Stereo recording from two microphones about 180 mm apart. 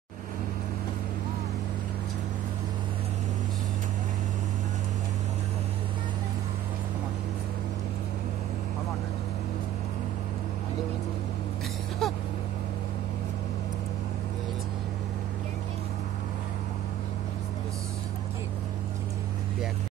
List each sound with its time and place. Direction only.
12.0 s vehicle: centre (ahead or behind)